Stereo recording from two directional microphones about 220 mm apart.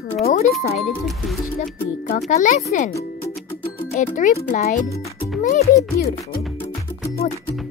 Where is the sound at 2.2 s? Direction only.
30° left (ahead or behind).